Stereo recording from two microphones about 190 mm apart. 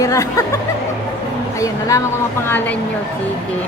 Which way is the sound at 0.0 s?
20° left (ahead or behind).